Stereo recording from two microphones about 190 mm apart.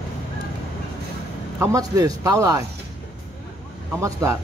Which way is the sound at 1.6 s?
15° right (ahead or behind).